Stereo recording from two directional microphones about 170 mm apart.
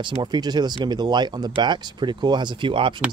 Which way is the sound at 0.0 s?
25° right (ahead or behind).